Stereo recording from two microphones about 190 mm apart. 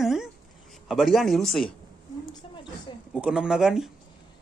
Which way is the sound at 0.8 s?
Centre (ahead or behind).